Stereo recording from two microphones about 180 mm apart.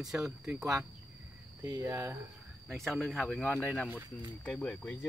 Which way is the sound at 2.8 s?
Centre (ahead or behind).